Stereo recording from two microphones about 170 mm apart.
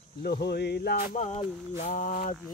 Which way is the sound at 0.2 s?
70° left (ahead or behind).